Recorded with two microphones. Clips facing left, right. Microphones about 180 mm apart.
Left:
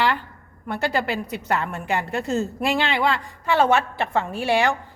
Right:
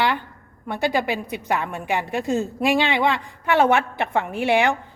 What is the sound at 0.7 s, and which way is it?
A woman's voice, 15° right (ahead or behind).